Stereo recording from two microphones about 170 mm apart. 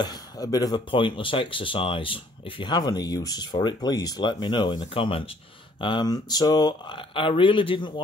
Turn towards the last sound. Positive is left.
turn(degrees=30)  # may be behind; listen again after turning